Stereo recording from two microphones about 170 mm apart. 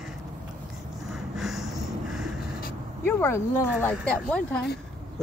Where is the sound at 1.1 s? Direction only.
Centre (ahead or behind).